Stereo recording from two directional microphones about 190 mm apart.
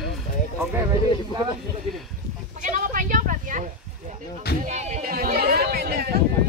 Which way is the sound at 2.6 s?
45° right (ahead or behind).